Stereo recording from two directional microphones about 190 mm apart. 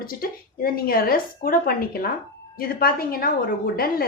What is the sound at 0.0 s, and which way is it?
A woman's voice, 50° left (ahead or behind).